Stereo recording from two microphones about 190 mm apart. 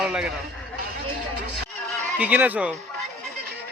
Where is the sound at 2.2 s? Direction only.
10° right (ahead or behind).